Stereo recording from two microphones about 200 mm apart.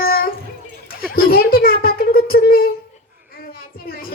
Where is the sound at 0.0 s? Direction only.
50° left (ahead or behind).